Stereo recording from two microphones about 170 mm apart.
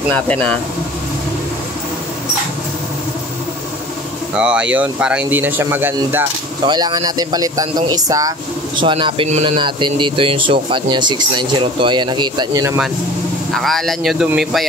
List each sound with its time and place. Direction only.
0.1 s speech: 5° left (ahead or behind)
4.4 s speech: 5° right (ahead or behind)
6.6 s a man's voice: 25° right (ahead or behind)
13.5 s speech: centre (ahead or behind)